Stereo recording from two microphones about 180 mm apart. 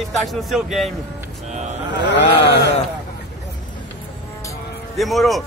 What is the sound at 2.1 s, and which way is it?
Speech, 75° left (ahead or behind).